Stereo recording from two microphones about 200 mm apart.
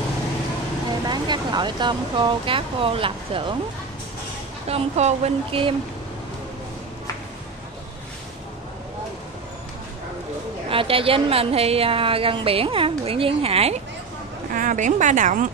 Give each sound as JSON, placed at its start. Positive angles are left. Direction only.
{"t": 1.0, "sound": "speech", "side_deg": -20}
{"t": 4.6, "sound": "a woman's voice", "side_deg": -30}
{"t": 10.7, "sound": "a woman's voice", "side_deg": -25}
{"t": 14.5, "sound": "speech", "side_deg": -40}